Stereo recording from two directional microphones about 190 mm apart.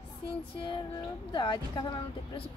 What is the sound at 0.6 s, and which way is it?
A woman's voice, 25° left (ahead or behind).